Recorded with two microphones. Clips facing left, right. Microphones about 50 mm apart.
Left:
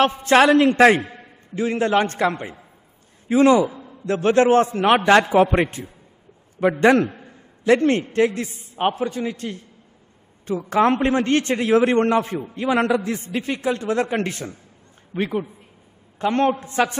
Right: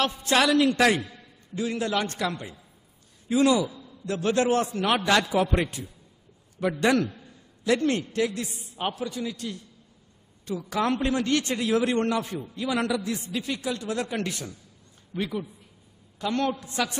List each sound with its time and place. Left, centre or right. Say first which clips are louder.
0.0 s a man's voice: left 8 dB; left